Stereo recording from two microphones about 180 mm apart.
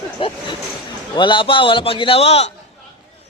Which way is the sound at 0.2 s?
30° left (ahead or behind).